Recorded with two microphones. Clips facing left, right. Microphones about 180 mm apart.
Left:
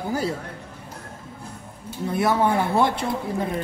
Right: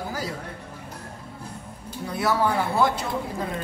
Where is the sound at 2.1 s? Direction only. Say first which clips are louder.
Left 3 dB; 25° left (ahead or behind).